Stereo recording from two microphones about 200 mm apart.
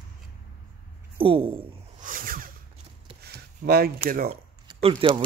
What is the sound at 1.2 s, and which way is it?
Speech, 25° right (ahead or behind).